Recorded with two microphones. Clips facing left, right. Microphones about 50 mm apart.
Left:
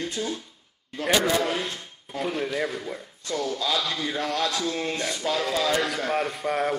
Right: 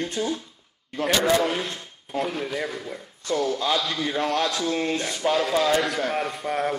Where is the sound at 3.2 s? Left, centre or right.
Right.